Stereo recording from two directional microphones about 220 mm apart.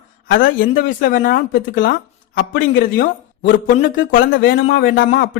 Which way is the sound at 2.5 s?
50° left (ahead or behind).